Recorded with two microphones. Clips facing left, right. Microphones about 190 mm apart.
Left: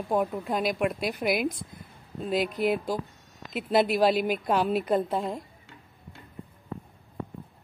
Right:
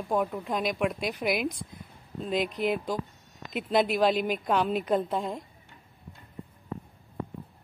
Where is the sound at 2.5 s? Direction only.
5° left (ahead or behind).